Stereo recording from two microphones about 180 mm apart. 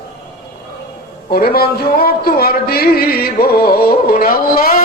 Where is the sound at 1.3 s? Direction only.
60° left (ahead or behind).